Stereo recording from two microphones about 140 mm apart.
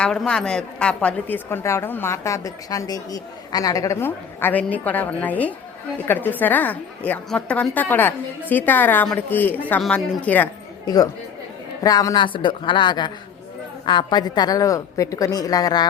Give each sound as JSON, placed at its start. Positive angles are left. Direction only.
{"t": 0.0, "sound": "a woman's voice", "side_deg": 5}
{"t": 10.8, "sound": "a woman's voice", "side_deg": 25}